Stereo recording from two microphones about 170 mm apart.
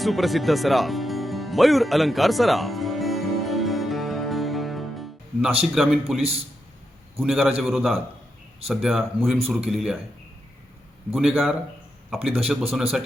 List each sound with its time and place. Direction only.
0.0 s music: centre (ahead or behind)
5.7 s speech: centre (ahead or behind)
11.1 s speech: centre (ahead or behind)
12.7 s speech: centre (ahead or behind)